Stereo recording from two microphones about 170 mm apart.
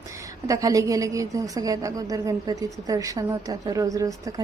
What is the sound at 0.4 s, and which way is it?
A woman's voice, 20° right (ahead or behind).